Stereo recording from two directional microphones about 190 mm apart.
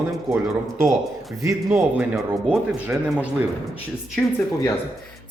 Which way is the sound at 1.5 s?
10° right (ahead or behind).